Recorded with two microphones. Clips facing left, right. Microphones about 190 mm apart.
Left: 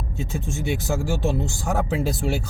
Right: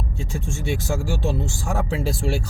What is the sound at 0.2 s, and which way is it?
Speech, 20° left (ahead or behind).